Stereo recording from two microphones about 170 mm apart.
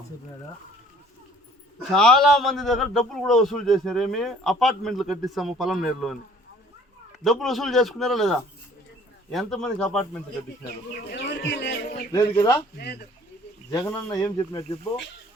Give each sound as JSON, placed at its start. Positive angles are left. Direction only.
{"t": 1.9, "sound": "a man's voice", "side_deg": 0}
{"t": 7.3, "sound": "a man's voice", "side_deg": 0}
{"t": 11.1, "sound": "speech", "side_deg": 90}
{"t": 12.1, "sound": "speech", "side_deg": 20}
{"t": 12.7, "sound": "speech", "side_deg": 65}
{"t": 13.7, "sound": "speech", "side_deg": 20}